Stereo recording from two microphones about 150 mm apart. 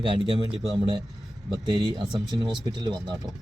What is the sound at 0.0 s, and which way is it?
Speech, 30° right (ahead or behind).